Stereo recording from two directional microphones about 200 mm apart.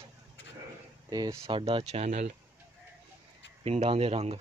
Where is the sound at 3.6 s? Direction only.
30° right (ahead or behind).